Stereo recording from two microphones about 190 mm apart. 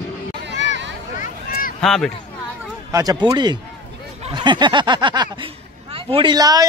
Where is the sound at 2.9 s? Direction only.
20° right (ahead or behind).